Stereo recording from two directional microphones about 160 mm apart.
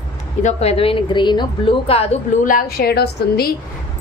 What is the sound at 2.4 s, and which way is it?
A woman's voice, 65° left (ahead or behind).